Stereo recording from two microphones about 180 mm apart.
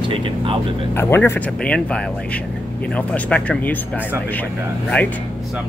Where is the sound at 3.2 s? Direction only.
5° left (ahead or behind).